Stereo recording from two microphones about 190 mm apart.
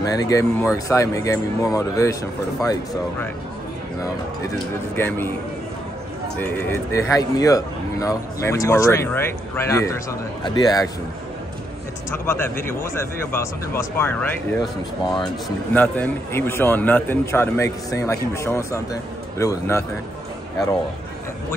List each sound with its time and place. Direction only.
0.0 s a man's voice: 20° left (ahead or behind)
4.9 s a man's voice: 10° left (ahead or behind)
6.4 s a man's voice: 15° left (ahead or behind)
13.0 s a man's voice: 15° left (ahead or behind)